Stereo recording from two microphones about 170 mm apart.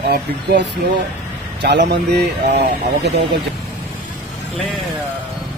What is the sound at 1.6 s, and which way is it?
Speech, 80° right.